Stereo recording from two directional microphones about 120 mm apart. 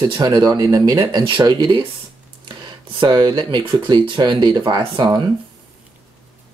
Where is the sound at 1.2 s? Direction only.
40° right (ahead or behind).